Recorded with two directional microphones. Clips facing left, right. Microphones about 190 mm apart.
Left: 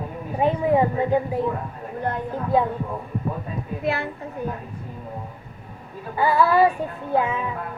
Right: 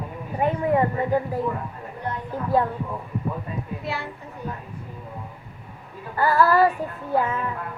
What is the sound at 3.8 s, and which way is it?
Speech, 55° left (ahead or behind).